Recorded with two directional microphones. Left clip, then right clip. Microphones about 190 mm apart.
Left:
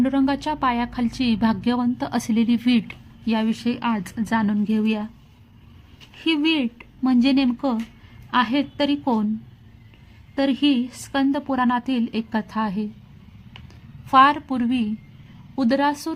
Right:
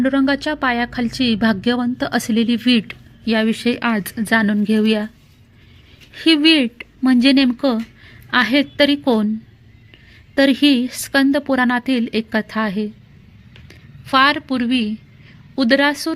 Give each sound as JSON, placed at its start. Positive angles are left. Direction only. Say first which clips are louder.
{"t": 0.0, "sound": "a woman's voice", "louder": "right 4 dB", "side_deg": -5}
{"t": 6.1, "sound": "a woman's voice", "louder": "right 8 dB", "side_deg": -15}
{"t": 10.3, "sound": "a woman's voice", "louder": "right 6 dB", "side_deg": -20}
{"t": 14.1, "sound": "a woman's voice", "louder": "right 1 dB", "side_deg": -10}